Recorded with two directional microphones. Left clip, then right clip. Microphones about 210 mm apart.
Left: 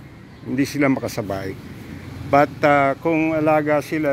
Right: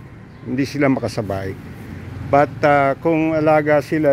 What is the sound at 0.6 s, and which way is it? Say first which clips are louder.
Speech: right 1 dB; 10° right (ahead or behind).